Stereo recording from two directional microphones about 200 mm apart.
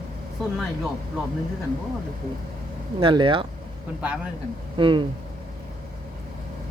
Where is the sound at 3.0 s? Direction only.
25° right (ahead or behind).